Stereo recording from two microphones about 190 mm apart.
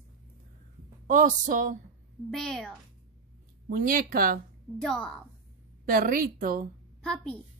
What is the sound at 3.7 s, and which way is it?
Speech, 50° right (ahead or behind).